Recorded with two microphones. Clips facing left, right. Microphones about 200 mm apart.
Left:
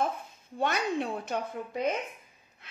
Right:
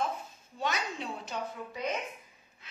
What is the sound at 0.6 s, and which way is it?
A woman's voice, 55° left (ahead or behind).